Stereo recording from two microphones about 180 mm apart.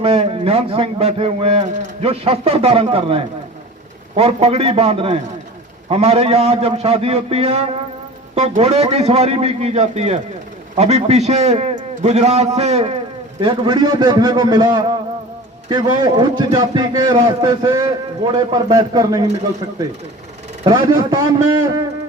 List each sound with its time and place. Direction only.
0.0 s a man's voice: 35° right (ahead or behind)
20.7 s a man's voice: 20° right (ahead or behind)